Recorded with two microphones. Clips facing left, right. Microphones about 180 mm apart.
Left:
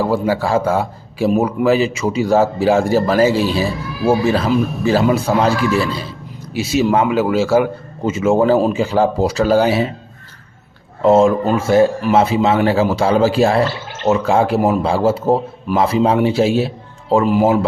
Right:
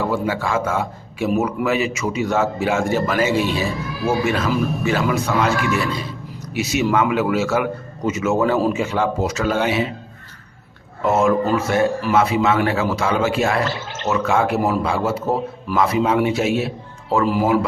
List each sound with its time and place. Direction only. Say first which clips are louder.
0.0 s a man's voice: left 4 dB; 35° left (ahead or behind)
11.0 s a man's voice: left 5 dB; 30° left (ahead or behind)